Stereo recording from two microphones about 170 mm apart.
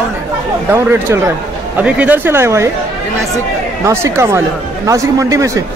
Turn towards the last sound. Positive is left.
turn(degrees=-20)  # may be behind; listen again after turning